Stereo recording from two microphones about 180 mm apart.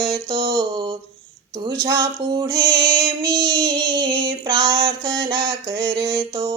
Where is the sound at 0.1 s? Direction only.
30° right (ahead or behind).